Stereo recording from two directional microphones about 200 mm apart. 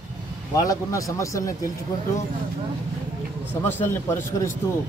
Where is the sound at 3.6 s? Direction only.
10° left (ahead or behind).